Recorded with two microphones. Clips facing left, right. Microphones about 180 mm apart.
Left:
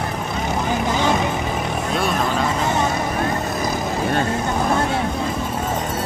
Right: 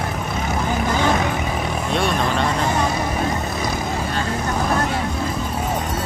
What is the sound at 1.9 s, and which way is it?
Vehicle, centre (ahead or behind).